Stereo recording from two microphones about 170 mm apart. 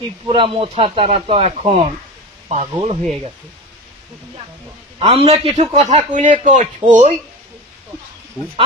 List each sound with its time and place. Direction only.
0.3 s a man's voice: 30° right (ahead or behind)
4.9 s a man's voice: 35° right (ahead or behind)